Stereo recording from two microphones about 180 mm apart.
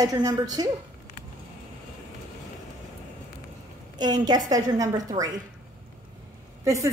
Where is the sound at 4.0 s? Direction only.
20° right (ahead or behind).